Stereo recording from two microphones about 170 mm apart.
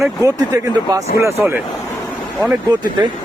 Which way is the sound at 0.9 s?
25° right (ahead or behind).